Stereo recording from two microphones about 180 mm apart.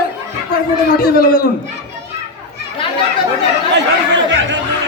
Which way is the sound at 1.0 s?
55° left (ahead or behind).